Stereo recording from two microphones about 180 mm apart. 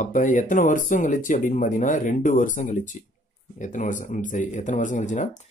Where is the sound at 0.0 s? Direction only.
45° left (ahead or behind).